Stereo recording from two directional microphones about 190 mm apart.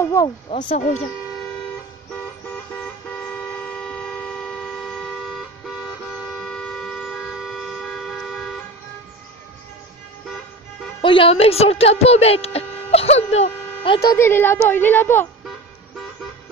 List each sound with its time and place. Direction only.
0.0 s speech: 15° left (ahead or behind)
0.5 s speech: 30° left (ahead or behind)
0.7 s speech: 40° left (ahead or behind)
3.3 s vehicle: 5° left (ahead or behind)
11.0 s speech: 25° left (ahead or behind)
14.1 s speech: 10° left (ahead or behind)